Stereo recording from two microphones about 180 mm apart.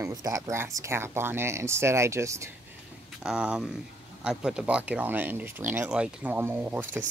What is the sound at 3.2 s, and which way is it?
Speech, 5° right (ahead or behind).